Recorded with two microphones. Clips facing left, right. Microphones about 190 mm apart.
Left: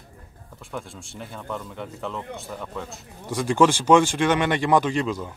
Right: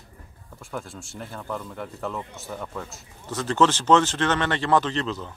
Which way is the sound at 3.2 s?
10° left (ahead or behind).